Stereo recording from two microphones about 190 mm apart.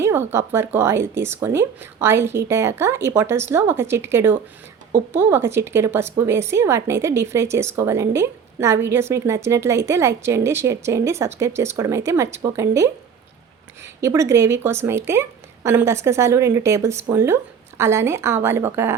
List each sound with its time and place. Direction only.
0.0 s a woman's voice: 10° right (ahead or behind)